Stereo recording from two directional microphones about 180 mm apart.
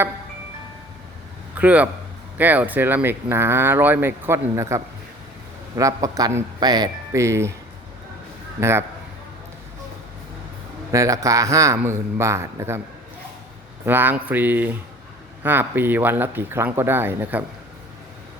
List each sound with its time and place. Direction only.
1.5 s a man's voice: 10° right (ahead or behind)
10.9 s speech: 20° right (ahead or behind)
13.8 s speech: 10° right (ahead or behind)